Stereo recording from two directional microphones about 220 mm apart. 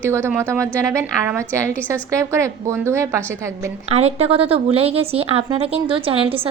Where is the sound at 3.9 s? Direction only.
25° right (ahead or behind).